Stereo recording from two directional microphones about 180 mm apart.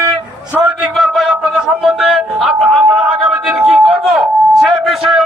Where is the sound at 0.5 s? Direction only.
10° right (ahead or behind).